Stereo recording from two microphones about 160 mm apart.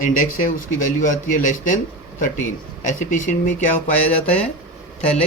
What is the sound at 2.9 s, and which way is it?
Speech, 50° left (ahead or behind).